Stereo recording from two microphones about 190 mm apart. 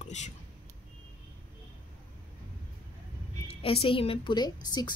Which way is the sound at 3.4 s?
30° left (ahead or behind).